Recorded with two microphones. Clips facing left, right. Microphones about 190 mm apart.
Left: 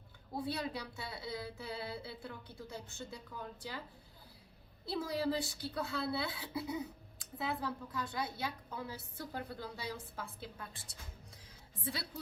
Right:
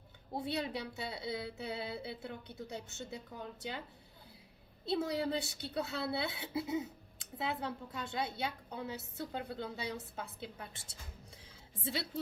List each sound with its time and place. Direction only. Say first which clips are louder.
0.3 s a woman's voice: right 1 dB; 25° right (ahead or behind)
4.9 s a woman's voice: right 2 dB; 25° right (ahead or behind)